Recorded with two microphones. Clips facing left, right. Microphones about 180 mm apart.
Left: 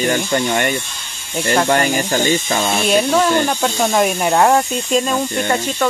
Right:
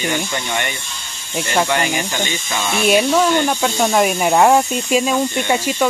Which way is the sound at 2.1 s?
45° left (ahead or behind).